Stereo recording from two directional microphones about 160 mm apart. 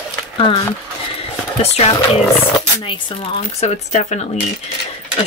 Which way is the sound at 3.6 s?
45° left (ahead or behind).